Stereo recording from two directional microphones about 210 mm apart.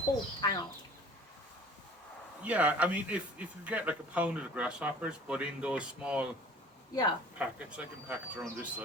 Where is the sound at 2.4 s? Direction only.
5° right (ahead or behind).